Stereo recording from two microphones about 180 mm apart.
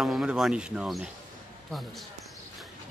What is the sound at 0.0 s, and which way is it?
Speech, 5° right (ahead or behind).